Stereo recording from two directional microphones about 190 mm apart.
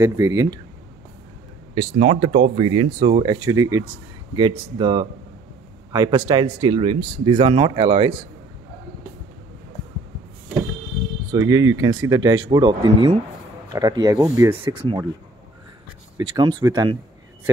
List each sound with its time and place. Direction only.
0.0 s speech: 15° right (ahead or behind)
2.0 s speech: 35° right (ahead or behind); by 4.0 s 15° right (ahead or behind)
4.4 s speech: 25° right (ahead or behind)
11.3 s speech: 15° right (ahead or behind)
16.2 s speech: 25° right (ahead or behind)